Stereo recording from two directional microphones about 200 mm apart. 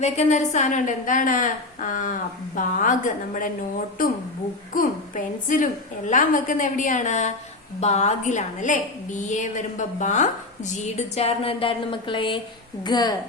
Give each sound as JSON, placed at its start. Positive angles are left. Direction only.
{"t": 0.0, "sound": "a woman's voice", "side_deg": 35}
{"t": 4.7, "sound": "a woman's voice", "side_deg": 40}